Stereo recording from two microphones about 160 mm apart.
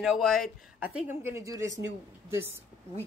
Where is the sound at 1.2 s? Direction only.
15° right (ahead or behind).